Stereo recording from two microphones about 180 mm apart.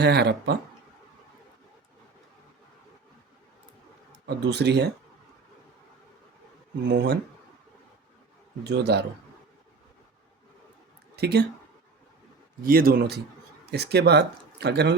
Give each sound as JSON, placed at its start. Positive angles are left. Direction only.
{"t": 0.0, "sound": "speech", "side_deg": -70}
{"t": 4.3, "sound": "speech", "side_deg": -70}
{"t": 6.8, "sound": "speech", "side_deg": -70}
{"t": 8.6, "sound": "speech", "side_deg": -65}
{"t": 11.2, "sound": "speech", "side_deg": -65}
{"t": 12.6, "sound": "speech", "side_deg": -55}